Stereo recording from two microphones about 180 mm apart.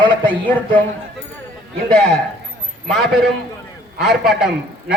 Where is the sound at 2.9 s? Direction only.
Centre (ahead or behind).